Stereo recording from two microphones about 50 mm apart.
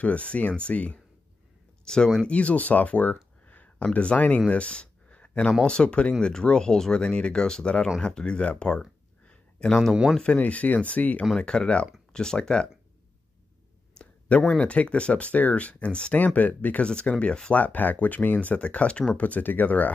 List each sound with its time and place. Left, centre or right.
0.0 s speech: left
1.9 s speech: centre
2.2 s speech: left
3.4 s a sound: left
3.8 s speech: left
4.5 s a sound: left
5.7 s speech: centre
11.3 s speech: centre
14.6 s speech: left
16.8 s speech: centre
17.6 s speech: left